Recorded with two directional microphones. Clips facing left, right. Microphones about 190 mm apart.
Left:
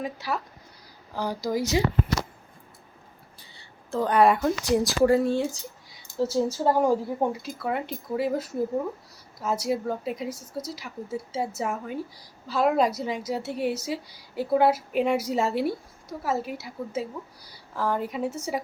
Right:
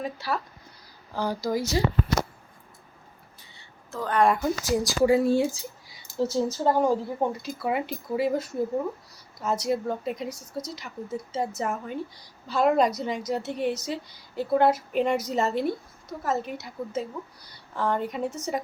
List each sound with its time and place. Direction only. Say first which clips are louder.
0.0 s speech: even; 15° left (ahead or behind)
3.5 s a sound: left 8 dB; 35° left (ahead or behind)
4.2 s a woman's voice: left 1 dB; centre (ahead or behind)